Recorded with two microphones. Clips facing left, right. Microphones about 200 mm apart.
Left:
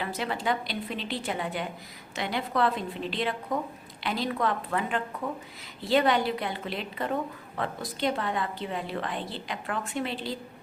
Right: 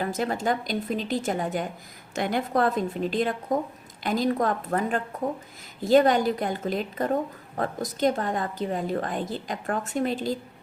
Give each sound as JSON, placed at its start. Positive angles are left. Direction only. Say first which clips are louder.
{"t": 0.0, "sound": "a woman's voice", "louder": "right 4 dB", "side_deg": -45}